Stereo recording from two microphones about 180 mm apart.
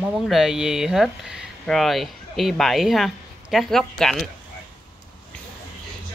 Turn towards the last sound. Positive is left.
turn(degrees=0)  # may be behind; listen again after turning